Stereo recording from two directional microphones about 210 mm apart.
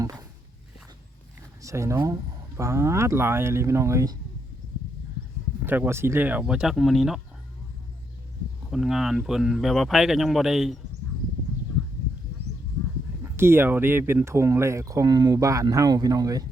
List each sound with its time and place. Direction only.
0.0 s a sound: 15° right (ahead or behind)
1.6 s speech: 15° right (ahead or behind)
5.6 s speech: 10° right (ahead or behind)
8.7 s speech: centre (ahead or behind)
13.2 s speech: 10° right (ahead or behind)